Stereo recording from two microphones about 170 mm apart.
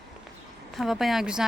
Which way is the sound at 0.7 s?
Centre (ahead or behind).